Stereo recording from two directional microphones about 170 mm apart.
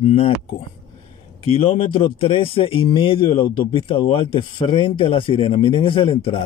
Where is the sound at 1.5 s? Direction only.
35° left (ahead or behind).